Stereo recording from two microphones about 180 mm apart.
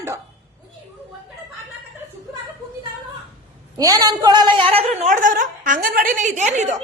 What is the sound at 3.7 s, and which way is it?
A woman's voice, 20° right (ahead or behind).